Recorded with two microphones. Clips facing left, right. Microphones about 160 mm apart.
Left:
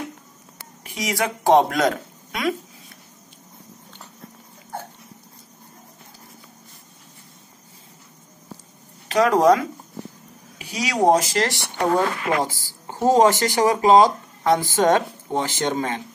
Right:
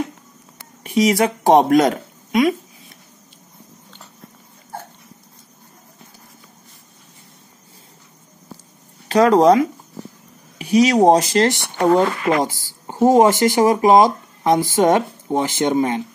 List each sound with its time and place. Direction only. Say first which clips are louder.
0.8 s speech: right 9 dB; 25° right (ahead or behind)
9.1 s a woman's voice: right 4 dB; 30° right (ahead or behind)